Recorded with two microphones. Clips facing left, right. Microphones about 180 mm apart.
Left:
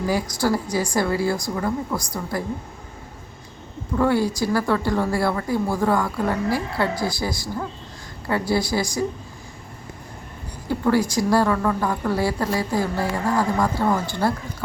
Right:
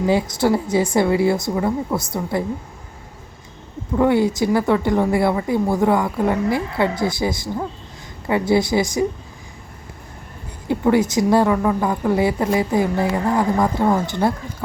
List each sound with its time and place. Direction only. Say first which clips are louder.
0.0 s speech: right 5 dB; 25° right (ahead or behind)
3.9 s speech: right 4 dB; 20° right (ahead or behind)
10.7 s speech: right 3 dB; 20° right (ahead or behind)